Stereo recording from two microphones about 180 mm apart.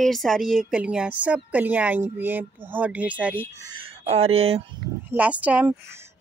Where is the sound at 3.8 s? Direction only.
35° right (ahead or behind).